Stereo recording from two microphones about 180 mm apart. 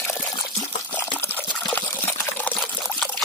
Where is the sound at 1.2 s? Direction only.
15° left (ahead or behind).